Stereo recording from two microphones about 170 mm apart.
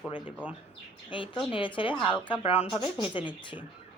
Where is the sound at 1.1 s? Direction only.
30° left (ahead or behind).